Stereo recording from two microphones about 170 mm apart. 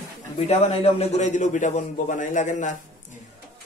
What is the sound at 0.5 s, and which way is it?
A man's voice, 40° left (ahead or behind).